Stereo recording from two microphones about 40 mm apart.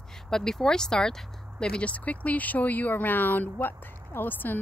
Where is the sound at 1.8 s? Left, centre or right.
Left.